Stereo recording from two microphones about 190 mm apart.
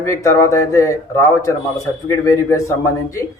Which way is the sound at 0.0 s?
15° left (ahead or behind).